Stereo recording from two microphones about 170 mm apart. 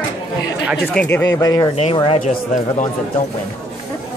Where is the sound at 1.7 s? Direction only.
35° left (ahead or behind).